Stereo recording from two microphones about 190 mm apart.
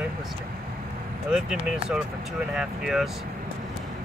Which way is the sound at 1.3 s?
5° right (ahead or behind).